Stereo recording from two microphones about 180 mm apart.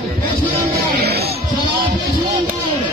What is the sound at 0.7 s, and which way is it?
Music, 60° right (ahead or behind).